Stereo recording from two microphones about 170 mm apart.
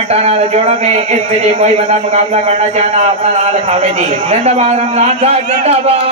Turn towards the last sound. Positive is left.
turn(degrees=-40)  # may be behind; listen again after turning